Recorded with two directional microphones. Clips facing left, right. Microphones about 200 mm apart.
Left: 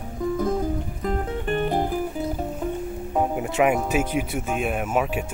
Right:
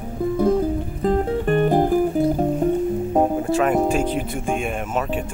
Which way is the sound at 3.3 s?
15° left (ahead or behind).